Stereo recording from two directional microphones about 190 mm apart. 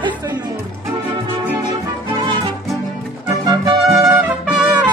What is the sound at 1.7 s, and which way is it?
Music, 25° right (ahead or behind).